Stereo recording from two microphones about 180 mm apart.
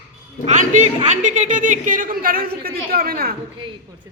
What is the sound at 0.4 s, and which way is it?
A woman's voice, 40° right (ahead or behind).